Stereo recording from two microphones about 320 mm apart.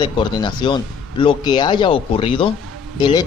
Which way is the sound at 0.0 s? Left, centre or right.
Centre.